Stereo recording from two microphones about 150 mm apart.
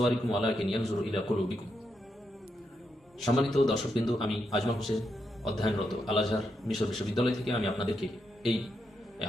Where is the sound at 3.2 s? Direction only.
Centre (ahead or behind).